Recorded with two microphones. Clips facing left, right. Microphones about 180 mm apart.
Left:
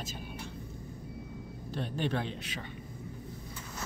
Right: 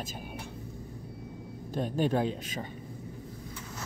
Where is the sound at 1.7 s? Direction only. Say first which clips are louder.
Right 5 dB; 40° right (ahead or behind).